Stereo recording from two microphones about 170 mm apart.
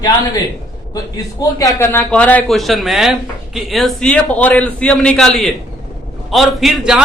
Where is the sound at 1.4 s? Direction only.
20° left (ahead or behind).